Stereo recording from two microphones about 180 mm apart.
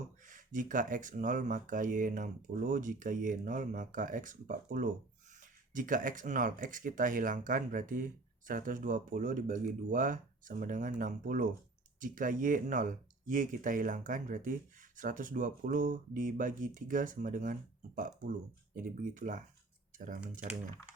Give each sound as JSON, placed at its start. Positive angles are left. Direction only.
{"t": 0.3, "sound": "speech", "side_deg": -45}